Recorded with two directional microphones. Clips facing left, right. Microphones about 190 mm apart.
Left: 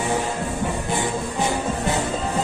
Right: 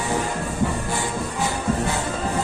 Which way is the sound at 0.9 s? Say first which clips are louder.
Left 2 dB; 20° left (ahead or behind).